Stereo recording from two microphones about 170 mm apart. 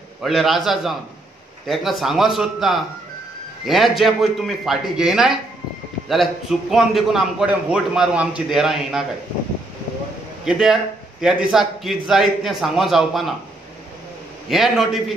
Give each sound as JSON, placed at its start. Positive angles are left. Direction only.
{"t": 0.2, "sound": "a man's voice", "side_deg": 0}
{"t": 6.7, "sound": "a man's voice", "side_deg": 0}
{"t": 10.4, "sound": "a man's voice", "side_deg": -5}
{"t": 14.5, "sound": "a man's voice", "side_deg": 0}